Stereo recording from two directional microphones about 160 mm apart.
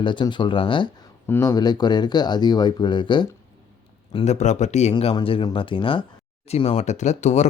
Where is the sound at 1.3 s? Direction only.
20° left (ahead or behind).